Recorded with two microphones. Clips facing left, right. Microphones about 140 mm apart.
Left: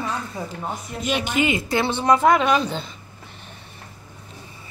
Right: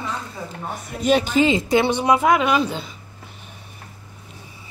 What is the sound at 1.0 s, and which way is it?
A woman's voice, 40° right (ahead or behind).